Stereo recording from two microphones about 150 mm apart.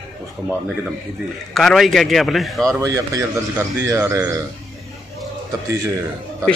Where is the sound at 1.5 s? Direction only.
Centre (ahead or behind).